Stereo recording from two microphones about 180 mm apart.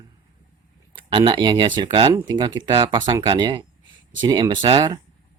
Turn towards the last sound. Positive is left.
turn(degrees=-25)  # may be behind; listen again after turning